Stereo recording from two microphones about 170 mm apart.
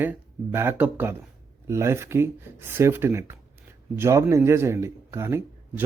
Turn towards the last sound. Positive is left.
turn(degrees=-15)  # may be behind; listen again after turning